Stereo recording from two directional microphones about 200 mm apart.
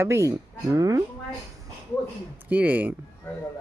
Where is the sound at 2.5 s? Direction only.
10° right (ahead or behind).